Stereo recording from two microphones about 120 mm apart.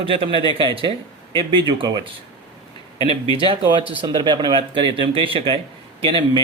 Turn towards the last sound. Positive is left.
turn(degrees=-45)  # may be behind; listen again after turning